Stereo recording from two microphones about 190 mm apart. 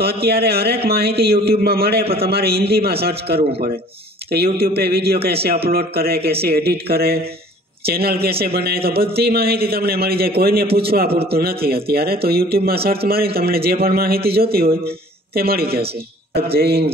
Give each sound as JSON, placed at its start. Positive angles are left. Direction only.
{"t": 0.2, "sound": "a man's voice", "side_deg": -55}